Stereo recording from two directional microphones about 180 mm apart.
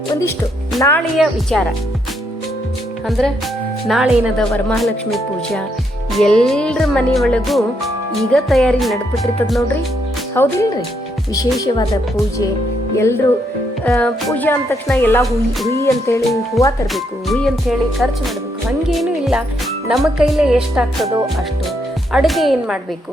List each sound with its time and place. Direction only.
0.8 s speech: 10° left (ahead or behind)
1.1 s music: centre (ahead or behind)
3.1 s music: centre (ahead or behind)
10.3 s speech: 15° left (ahead or behind)
13.8 s speech: centre (ahead or behind)
15.2 s music: centre (ahead or behind)
15.8 s speech: 15° left (ahead or behind)
16.9 s music: centre (ahead or behind)
18.9 s speech: centre (ahead or behind)
19.9 s music: centre (ahead or behind)
22.1 s music: centre (ahead or behind)